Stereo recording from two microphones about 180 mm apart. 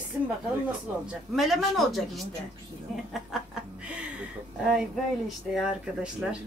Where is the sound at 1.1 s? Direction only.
Centre (ahead or behind).